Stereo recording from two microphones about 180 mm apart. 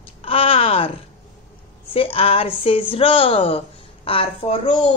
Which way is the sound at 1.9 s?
30° left (ahead or behind).